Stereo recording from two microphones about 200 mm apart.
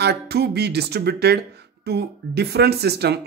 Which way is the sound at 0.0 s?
55° right (ahead or behind).